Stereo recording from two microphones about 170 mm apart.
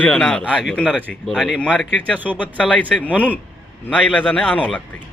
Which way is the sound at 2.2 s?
10° right (ahead or behind).